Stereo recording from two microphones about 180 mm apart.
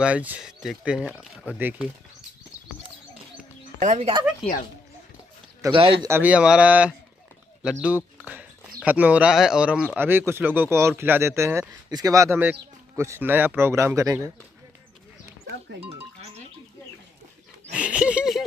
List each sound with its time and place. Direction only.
0.0 s speech: 10° right (ahead or behind)
3.8 s speech: 40° right (ahead or behind)
5.6 s speech: 30° right (ahead or behind)
6.0 s speech: 10° right (ahead or behind)
8.8 s speech: 10° right (ahead or behind)
17.6 s speech: 5° right (ahead or behind)